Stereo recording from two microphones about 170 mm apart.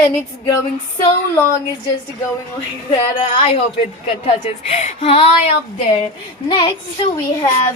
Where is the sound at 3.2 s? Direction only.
35° left (ahead or behind).